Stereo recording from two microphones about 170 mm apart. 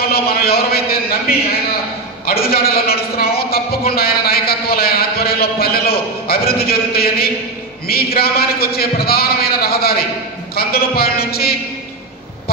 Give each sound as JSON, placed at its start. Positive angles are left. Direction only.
{"t": 0.1, "sound": "a man's voice", "side_deg": 65}